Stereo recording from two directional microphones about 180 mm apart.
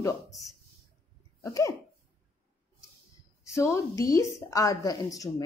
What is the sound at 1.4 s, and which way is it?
Speech, 15° left (ahead or behind).